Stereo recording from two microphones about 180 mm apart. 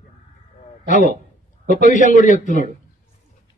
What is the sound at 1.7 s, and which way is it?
Speech, 45° left (ahead or behind).